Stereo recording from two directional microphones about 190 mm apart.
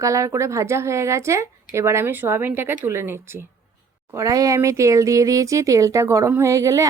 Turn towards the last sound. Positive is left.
turn(degrees=-15)  # may be behind; listen again after turning